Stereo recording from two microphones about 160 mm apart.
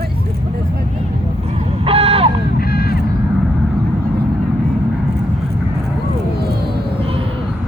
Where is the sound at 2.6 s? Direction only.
75° left (ahead or behind).